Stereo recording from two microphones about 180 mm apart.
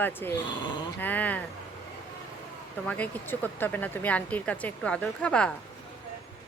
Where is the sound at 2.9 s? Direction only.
10° left (ahead or behind).